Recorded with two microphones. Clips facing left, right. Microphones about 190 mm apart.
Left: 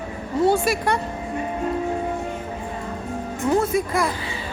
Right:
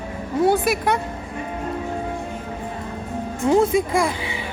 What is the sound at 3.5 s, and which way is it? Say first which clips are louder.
Speech: right 3 dB; 15° right (ahead or behind).